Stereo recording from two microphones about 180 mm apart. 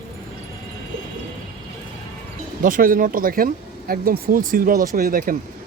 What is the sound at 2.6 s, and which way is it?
Speech, 50° right (ahead or behind).